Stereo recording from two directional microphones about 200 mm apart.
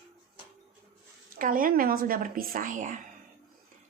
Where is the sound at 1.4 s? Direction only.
45° right (ahead or behind).